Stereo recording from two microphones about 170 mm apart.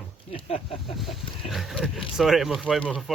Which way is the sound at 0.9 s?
Centre (ahead or behind).